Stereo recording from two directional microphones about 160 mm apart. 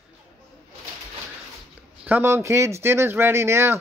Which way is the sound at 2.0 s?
15° right (ahead or behind).